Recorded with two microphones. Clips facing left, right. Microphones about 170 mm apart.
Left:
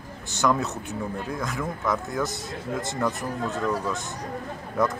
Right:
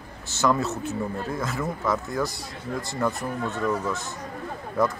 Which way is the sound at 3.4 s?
35° left (ahead or behind).